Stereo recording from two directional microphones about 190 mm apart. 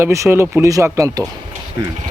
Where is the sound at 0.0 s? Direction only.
15° right (ahead or behind).